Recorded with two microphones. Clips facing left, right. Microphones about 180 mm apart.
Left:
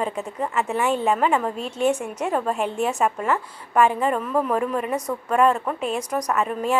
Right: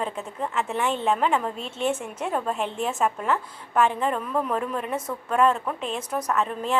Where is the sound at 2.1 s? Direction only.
5° left (ahead or behind).